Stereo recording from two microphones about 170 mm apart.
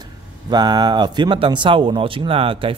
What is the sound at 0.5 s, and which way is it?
A man's voice, 25° right (ahead or behind).